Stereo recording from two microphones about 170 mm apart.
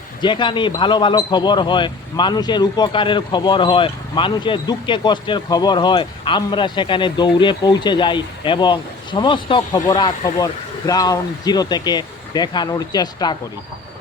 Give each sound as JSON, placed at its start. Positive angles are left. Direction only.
{"t": 0.2, "sound": "speech", "side_deg": 30}